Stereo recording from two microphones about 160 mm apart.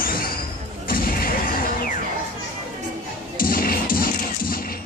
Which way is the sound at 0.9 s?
65° left (ahead or behind).